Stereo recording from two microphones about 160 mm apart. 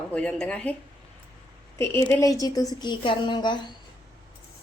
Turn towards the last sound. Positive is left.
turn(degrees=30)  # may be behind; listen again after turning